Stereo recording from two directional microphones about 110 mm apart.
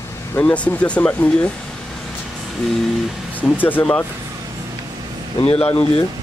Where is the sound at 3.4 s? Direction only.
15° left (ahead or behind).